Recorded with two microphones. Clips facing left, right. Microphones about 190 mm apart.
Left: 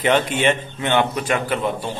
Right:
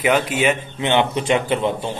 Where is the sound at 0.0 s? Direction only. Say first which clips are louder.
Even; 5° right (ahead or behind).